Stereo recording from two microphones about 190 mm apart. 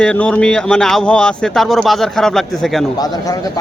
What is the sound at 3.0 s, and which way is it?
Speech, 20° left (ahead or behind).